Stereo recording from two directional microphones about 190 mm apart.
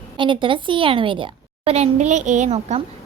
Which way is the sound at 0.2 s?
25° right (ahead or behind).